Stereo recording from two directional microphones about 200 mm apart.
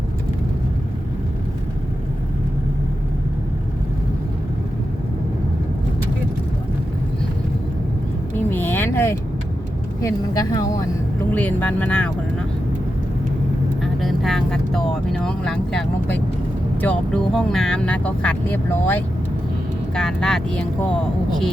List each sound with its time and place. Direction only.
8.4 s a sound: 10° left (ahead or behind)
10.0 s speech: 15° left (ahead or behind)
13.8 s speech: centre (ahead or behind)